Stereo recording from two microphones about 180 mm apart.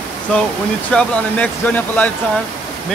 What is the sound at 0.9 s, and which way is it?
Speech, 5° left (ahead or behind).